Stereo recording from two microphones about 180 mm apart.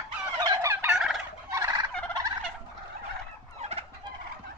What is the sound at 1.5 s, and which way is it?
Turkey, 20° right (ahead or behind).